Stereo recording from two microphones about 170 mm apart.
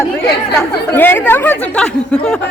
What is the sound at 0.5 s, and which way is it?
Speech, 10° left (ahead or behind).